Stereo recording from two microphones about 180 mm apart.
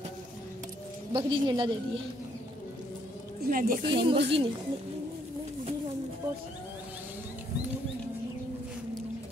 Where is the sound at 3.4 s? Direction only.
50° right (ahead or behind).